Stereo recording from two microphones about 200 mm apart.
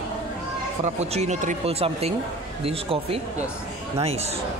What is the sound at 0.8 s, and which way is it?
Speech, 35° right (ahead or behind).